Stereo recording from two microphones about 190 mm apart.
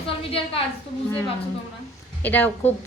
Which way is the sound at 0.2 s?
30° left (ahead or behind).